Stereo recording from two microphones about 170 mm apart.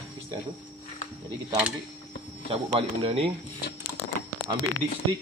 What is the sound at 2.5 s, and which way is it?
Speech, 35° right (ahead or behind).